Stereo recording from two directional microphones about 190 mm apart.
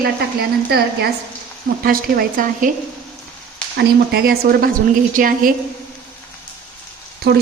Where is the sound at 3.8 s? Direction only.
55° right (ahead or behind).